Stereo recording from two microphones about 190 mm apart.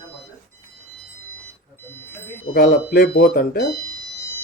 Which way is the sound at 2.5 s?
55° left (ahead or behind).